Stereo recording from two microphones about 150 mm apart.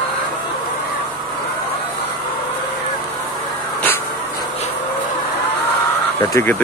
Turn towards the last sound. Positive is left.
turn(degrees=15)  # may be behind; listen again after turning